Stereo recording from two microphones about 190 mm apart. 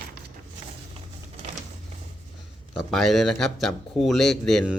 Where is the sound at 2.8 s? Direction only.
Centre (ahead or behind).